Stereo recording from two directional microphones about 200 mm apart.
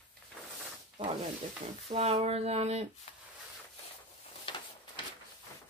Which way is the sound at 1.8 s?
30° right (ahead or behind).